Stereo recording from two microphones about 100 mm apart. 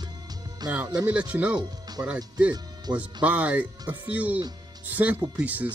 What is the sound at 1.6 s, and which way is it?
Music, 40° right (ahead or behind).